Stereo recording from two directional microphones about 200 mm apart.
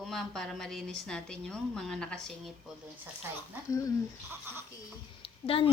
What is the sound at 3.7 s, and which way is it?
Speech, 15° left (ahead or behind).